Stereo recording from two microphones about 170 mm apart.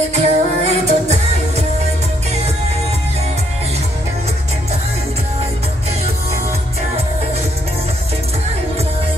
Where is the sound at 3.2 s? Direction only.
35° right (ahead or behind).